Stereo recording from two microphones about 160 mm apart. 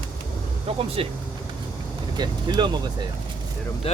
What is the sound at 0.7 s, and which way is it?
Speech, 35° right (ahead or behind).